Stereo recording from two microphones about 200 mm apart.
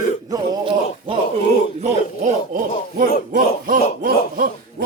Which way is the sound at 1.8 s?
40° right (ahead or behind).